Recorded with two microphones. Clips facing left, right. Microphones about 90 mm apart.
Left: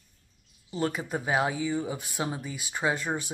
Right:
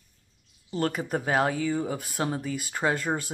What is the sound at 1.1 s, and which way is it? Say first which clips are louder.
Speech: right 3 dB; 50° right (ahead or behind).